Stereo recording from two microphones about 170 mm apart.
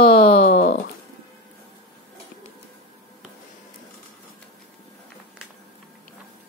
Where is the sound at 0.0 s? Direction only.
35° left (ahead or behind).